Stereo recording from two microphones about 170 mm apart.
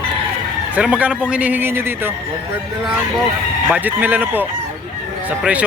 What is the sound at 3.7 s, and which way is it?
A man's voice, 10° right (ahead or behind).